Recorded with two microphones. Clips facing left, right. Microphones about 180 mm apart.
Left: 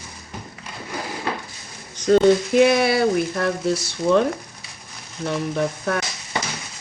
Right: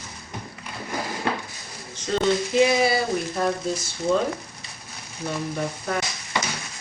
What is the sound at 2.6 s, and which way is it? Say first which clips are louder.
Speech: left 4 dB; 65° left (ahead or behind).